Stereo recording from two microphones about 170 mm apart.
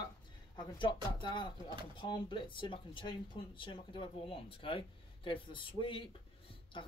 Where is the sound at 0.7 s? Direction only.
30° left (ahead or behind).